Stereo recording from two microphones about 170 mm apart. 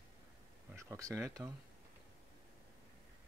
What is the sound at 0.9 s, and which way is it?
Speech, 20° right (ahead or behind).